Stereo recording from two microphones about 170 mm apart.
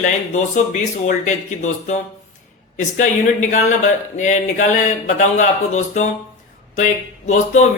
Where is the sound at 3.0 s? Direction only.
45° left (ahead or behind).